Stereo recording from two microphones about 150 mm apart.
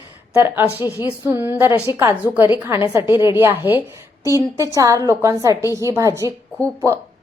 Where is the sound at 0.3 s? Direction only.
15° right (ahead or behind).